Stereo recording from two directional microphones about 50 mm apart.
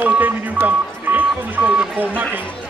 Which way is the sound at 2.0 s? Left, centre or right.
Right.